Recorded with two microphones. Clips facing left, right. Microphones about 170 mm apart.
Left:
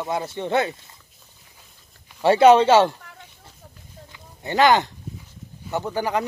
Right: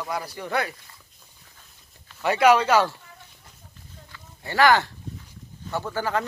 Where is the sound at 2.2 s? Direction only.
30° left (ahead or behind).